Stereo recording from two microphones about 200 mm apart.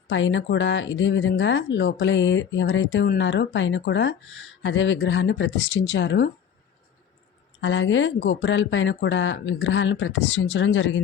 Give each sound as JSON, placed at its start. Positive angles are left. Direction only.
{"t": 0.1, "sound": "speech", "side_deg": 70}
{"t": 7.6, "sound": "speech", "side_deg": 65}